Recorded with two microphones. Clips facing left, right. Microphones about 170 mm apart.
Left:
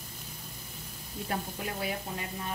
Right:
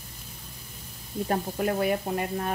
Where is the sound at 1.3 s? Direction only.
50° right (ahead or behind).